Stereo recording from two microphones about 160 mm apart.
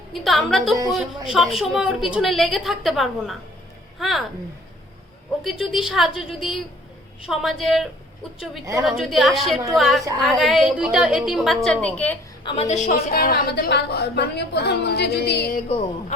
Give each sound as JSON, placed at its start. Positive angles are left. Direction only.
{"t": 0.1, "sound": "a woman's voice", "side_deg": 0}
{"t": 5.4, "sound": "a woman's voice", "side_deg": 0}
{"t": 12.4, "sound": "a woman's voice", "side_deg": 30}
{"t": 12.6, "sound": "a woman's voice", "side_deg": 45}